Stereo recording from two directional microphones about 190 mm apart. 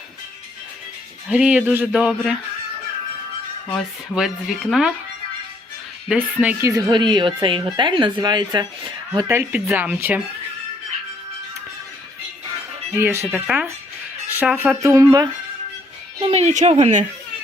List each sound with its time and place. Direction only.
1.3 s speech: 5° right (ahead or behind)
3.7 s speech: centre (ahead or behind)
6.1 s a woman's voice: 10° right (ahead or behind)
13.0 s speech: 10° right (ahead or behind)
16.2 s speech: 35° right (ahead or behind)